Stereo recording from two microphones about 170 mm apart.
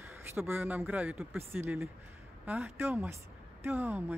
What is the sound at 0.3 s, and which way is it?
Speech, 15° right (ahead or behind).